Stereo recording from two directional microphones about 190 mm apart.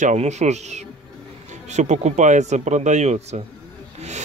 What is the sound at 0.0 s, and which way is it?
Speech, 35° right (ahead or behind).